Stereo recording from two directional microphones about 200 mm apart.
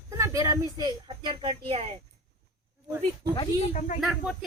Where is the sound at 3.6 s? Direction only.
40° left (ahead or behind).